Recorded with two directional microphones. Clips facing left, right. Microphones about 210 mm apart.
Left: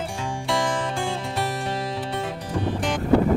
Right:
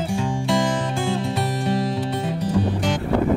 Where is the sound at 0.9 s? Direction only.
5° right (ahead or behind).